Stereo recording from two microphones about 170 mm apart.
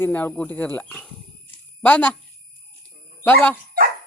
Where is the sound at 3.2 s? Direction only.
10° left (ahead or behind).